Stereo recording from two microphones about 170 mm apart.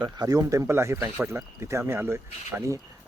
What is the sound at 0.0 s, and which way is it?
Speech, 20° right (ahead or behind).